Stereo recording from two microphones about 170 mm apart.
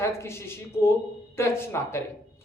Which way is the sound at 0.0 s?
15° left (ahead or behind).